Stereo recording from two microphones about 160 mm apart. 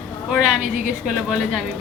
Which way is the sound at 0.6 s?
55° right (ahead or behind).